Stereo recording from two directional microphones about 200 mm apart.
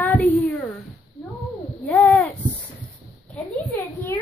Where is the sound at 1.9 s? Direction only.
10° left (ahead or behind).